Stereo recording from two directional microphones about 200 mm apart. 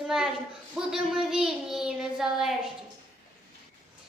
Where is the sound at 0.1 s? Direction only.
Centre (ahead or behind).